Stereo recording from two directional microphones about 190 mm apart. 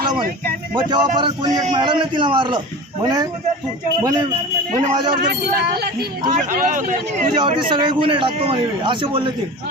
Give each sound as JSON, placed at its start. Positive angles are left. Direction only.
{"t": 0.9, "sound": "a man's voice", "side_deg": -25}
{"t": 4.7, "sound": "speech", "side_deg": -35}
{"t": 5.2, "sound": "speech", "side_deg": -55}
{"t": 6.3, "sound": "speech", "side_deg": -40}
{"t": 7.3, "sound": "a man's voice", "side_deg": -25}